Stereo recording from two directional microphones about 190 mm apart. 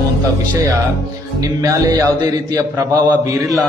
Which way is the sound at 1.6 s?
20° right (ahead or behind).